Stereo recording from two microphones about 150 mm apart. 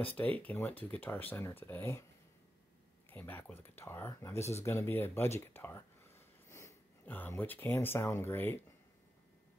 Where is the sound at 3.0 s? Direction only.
10° left (ahead or behind).